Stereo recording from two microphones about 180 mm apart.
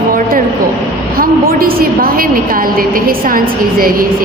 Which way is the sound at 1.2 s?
55° right (ahead or behind).